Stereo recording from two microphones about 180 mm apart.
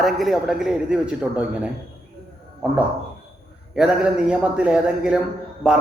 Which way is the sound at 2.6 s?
5° right (ahead or behind).